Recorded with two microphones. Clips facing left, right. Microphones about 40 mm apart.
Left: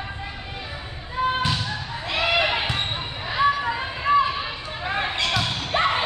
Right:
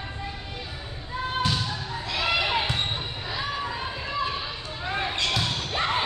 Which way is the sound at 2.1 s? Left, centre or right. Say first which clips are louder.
Left 4 dB; left.